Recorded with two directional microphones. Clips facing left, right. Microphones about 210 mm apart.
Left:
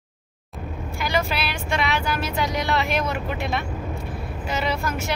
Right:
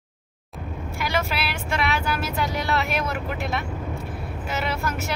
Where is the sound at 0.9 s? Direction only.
5° right (ahead or behind).